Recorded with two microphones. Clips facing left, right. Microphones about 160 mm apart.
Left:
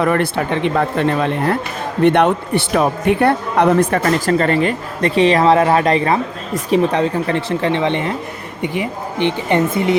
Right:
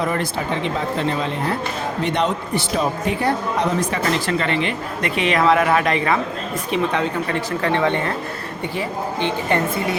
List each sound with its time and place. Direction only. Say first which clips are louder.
0.0 s a man's voice: left 6 dB; 60° left (ahead or behind); by 10.0 s 20° left (ahead or behind)